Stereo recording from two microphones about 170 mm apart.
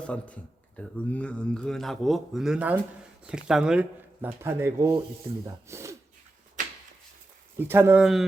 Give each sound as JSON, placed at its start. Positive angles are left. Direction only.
{"t": 0.1, "sound": "speech", "side_deg": 5}
{"t": 6.6, "sound": "a sound", "side_deg": -50}
{"t": 7.6, "sound": "speech", "side_deg": -15}